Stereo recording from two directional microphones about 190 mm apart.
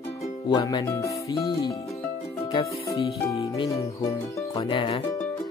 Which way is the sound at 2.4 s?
20° left (ahead or behind).